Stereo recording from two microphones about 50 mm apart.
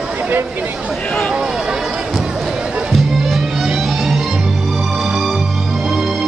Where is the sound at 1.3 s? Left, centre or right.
Centre.